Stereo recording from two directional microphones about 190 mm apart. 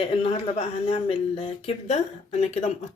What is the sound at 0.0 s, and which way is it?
Speech, 30° left (ahead or behind).